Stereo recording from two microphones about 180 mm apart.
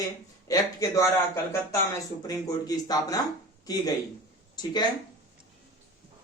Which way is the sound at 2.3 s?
20° left (ahead or behind).